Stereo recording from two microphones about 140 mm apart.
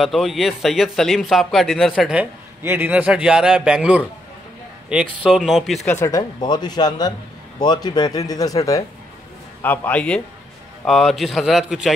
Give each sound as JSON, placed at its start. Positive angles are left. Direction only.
{"t": 0.0, "sound": "a man's voice", "side_deg": 0}
{"t": 2.6, "sound": "a man's voice", "side_deg": -15}
{"t": 5.2, "sound": "a man's voice", "side_deg": 0}
{"t": 5.9, "sound": "a man's voice", "side_deg": 20}
{"t": 9.6, "sound": "a man's voice", "side_deg": 10}